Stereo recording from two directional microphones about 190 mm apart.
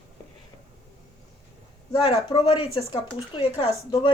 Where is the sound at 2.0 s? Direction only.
25° left (ahead or behind).